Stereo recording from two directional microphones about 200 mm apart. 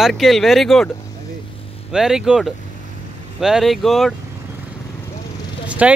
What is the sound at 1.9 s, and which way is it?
Speech, 5° right (ahead or behind).